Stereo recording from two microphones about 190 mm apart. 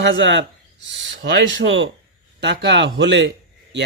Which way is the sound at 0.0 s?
75° right (ahead or behind).